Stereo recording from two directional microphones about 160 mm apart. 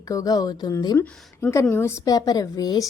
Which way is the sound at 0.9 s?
15° left (ahead or behind).